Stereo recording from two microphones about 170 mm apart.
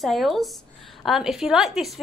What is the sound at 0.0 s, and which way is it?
A woman's voice, centre (ahead or behind).